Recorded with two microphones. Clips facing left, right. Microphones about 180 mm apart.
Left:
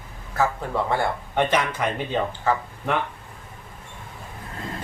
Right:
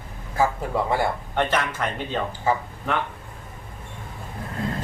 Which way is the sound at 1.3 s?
15° left (ahead or behind).